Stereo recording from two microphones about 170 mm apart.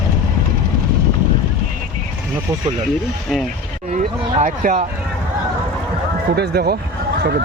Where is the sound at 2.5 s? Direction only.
15° right (ahead or behind).